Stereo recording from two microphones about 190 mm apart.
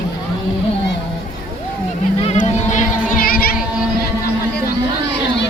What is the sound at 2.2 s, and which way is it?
Music, 35° left (ahead or behind).